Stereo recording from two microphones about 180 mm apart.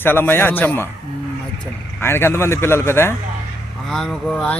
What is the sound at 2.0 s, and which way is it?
Speech, 15° left (ahead or behind).